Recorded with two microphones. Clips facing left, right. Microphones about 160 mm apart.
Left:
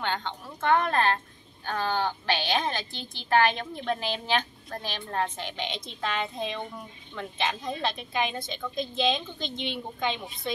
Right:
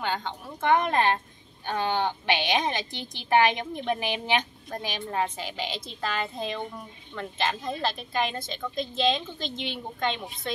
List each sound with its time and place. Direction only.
0.0 s a woman's voice: 10° right (ahead or behind)